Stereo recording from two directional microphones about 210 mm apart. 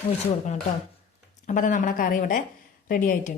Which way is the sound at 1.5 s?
40° left (ahead or behind).